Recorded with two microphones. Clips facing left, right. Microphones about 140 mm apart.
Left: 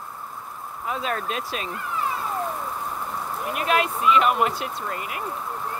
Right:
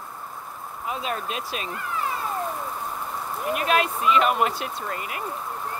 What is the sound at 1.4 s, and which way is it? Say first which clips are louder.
Speech: left 1 dB; 25° left (ahead or behind).